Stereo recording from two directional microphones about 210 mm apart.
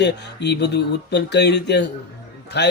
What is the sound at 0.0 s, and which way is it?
Speech, 55° left (ahead or behind).